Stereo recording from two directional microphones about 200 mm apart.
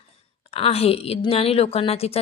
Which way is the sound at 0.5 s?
30° left (ahead or behind).